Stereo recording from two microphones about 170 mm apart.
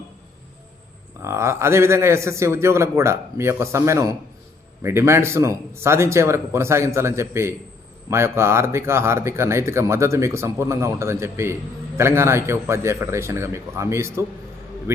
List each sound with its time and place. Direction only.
1.2 s speech: 15° right (ahead or behind)